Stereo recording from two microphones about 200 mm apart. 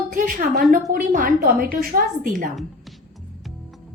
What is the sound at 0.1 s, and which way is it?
A woman's voice, 45° right (ahead or behind).